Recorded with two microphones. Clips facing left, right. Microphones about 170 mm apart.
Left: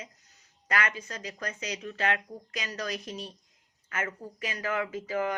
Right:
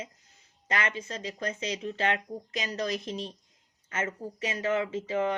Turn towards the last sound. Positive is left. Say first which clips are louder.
# right 2 dB
turn(degrees=-25)  # may be behind; listen again after turning